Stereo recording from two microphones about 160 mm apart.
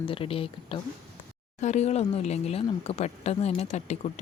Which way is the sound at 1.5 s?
45° left (ahead or behind).